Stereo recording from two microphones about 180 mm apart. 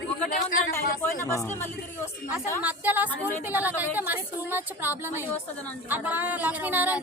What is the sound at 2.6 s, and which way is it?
Speech, 10° right (ahead or behind).